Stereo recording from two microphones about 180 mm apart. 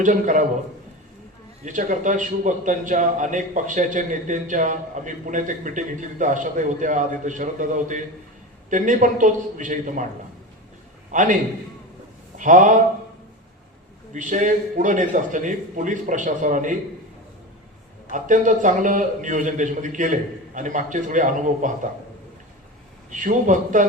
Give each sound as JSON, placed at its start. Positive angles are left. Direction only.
{"t": 0.0, "sound": "a man's voice", "side_deg": -45}
{"t": 1.6, "sound": "a man's voice", "side_deg": -45}
{"t": 11.1, "sound": "a man's voice", "side_deg": -45}
{"t": 12.4, "sound": "a man's voice", "side_deg": -45}
{"t": 14.1, "sound": "a man's voice", "side_deg": -45}
{"t": 18.1, "sound": "a man's voice", "side_deg": -45}
{"t": 23.0, "sound": "a man's voice", "side_deg": -45}